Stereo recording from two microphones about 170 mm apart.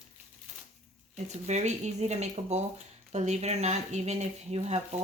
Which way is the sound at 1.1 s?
40° right (ahead or behind).